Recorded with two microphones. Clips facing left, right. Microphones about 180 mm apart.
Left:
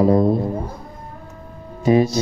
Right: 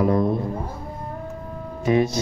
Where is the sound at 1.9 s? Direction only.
30° left (ahead or behind).